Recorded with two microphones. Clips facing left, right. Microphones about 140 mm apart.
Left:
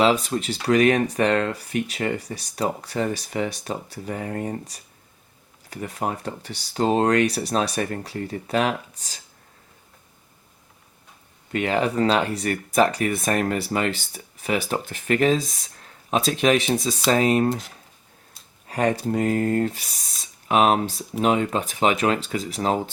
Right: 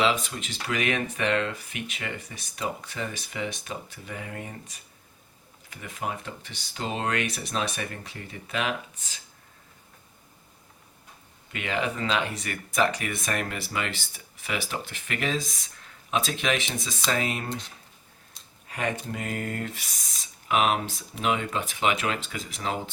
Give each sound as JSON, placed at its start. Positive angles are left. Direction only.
{"t": 0.0, "sound": "speech", "side_deg": 40}
{"t": 11.5, "sound": "speech", "side_deg": 40}
{"t": 18.7, "sound": "speech", "side_deg": 35}